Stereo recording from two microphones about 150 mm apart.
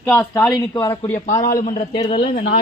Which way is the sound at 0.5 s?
20° left (ahead or behind).